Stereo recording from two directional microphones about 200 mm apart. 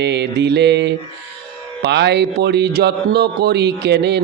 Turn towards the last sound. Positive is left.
turn(degrees=-60)  # may be behind; listen again after turning